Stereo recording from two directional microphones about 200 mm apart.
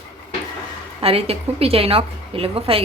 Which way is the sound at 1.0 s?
30° right (ahead or behind).